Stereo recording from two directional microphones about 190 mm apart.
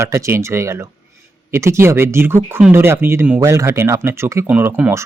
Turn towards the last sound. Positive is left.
turn(degrees=-10)  # may be behind; listen again after turning